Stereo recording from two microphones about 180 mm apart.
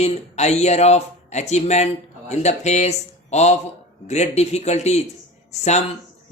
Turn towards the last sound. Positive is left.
turn(degrees=40)  # may be behind; listen again after turning